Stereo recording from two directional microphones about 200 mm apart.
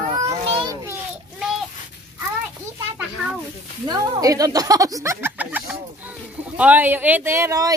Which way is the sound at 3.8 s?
20° right (ahead or behind).